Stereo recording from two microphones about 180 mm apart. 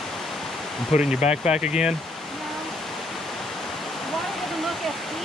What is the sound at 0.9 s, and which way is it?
Speech, 40° left (ahead or behind).